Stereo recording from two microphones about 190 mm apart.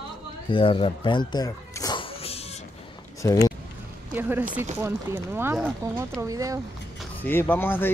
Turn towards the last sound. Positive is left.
turn(degrees=10)  # may be behind; listen again after turning